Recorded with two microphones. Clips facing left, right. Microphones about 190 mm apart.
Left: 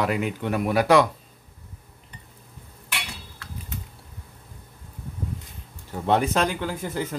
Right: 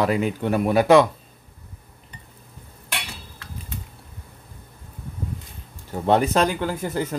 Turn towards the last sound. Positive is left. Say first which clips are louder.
# right 3 dB
turn(degrees=-40)  # may be behind; listen again after turning